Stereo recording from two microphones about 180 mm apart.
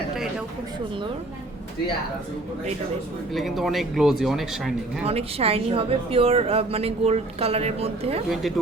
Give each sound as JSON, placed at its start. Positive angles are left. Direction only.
{"t": 3.3, "sound": "speech", "side_deg": 0}
{"t": 5.0, "sound": "a woman's voice", "side_deg": -35}
{"t": 8.3, "sound": "speech", "side_deg": 0}